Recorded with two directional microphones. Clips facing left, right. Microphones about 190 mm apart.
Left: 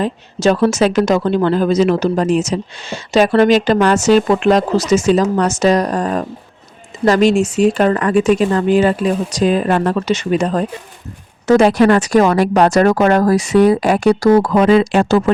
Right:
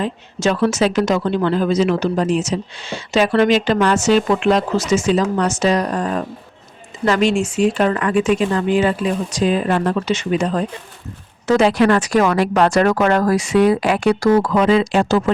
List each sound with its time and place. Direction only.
0.0 s speech: 35° left (ahead or behind); by 15.2 s 55° left (ahead or behind)